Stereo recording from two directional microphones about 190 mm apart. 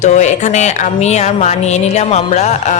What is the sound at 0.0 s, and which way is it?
Speech, 40° left (ahead or behind).